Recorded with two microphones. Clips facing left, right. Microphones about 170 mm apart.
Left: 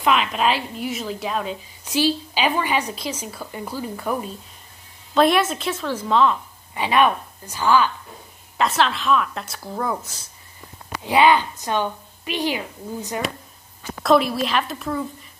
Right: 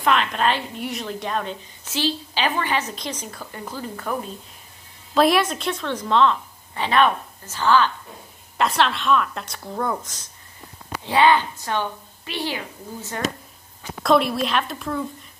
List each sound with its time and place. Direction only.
0.0 s a woman's voice: 5° left (ahead or behind)
5.1 s a woman's voice: centre (ahead or behind)
8.5 s a woman's voice: centre (ahead or behind); by 13.2 s 15° left (ahead or behind)
14.0 s a woman's voice: centre (ahead or behind)